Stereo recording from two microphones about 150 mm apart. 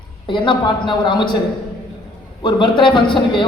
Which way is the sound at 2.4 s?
30° left (ahead or behind).